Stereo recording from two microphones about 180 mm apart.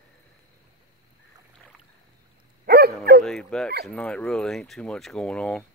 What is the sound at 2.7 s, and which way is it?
Dog, 60° right (ahead or behind).